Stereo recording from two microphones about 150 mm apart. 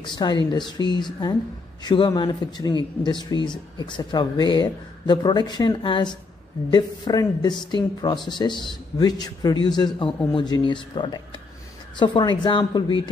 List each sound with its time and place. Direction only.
0.0 s a man's voice: 30° left (ahead or behind)